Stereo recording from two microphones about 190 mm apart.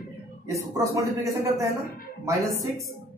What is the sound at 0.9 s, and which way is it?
A man's voice, 15° right (ahead or behind).